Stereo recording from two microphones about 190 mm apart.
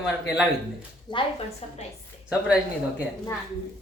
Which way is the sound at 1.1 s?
25° left (ahead or behind).